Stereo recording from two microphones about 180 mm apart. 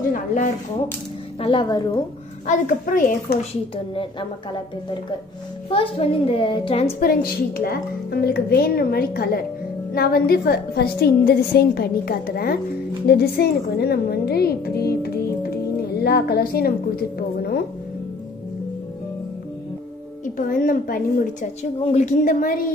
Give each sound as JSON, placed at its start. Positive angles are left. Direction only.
{"t": 0.1, "sound": "speech", "side_deg": 45}
{"t": 1.4, "sound": "a woman's voice", "side_deg": 30}
{"t": 2.4, "sound": "a woman's voice", "side_deg": 45}
{"t": 3.7, "sound": "a woman's voice", "side_deg": 30}
{"t": 5.7, "sound": "a woman's voice", "side_deg": 30}
{"t": 7.0, "sound": "a woman's voice", "side_deg": 55}
{"t": 20.3, "sound": "a woman's voice", "side_deg": 50}
{"t": 21.8, "sound": "a woman's voice", "side_deg": 40}